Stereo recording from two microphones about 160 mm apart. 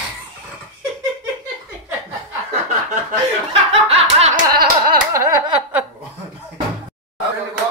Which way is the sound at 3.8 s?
40° right (ahead or behind).